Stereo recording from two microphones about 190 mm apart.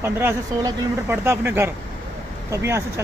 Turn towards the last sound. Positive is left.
turn(degrees=-15)  # may be behind; listen again after turning